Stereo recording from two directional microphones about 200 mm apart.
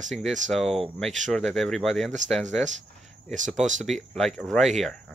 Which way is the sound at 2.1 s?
35° right (ahead or behind).